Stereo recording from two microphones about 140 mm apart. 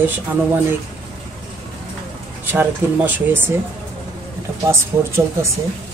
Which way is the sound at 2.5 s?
10° right (ahead or behind).